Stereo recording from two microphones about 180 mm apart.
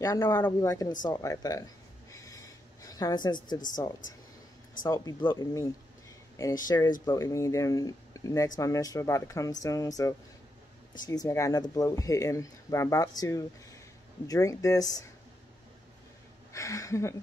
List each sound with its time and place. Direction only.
0.0 s speech: 20° left (ahead or behind)
2.0 s a sound: 15° left (ahead or behind)
3.4 s speech: 20° left (ahead or behind)
16.5 s speech: 20° left (ahead or behind)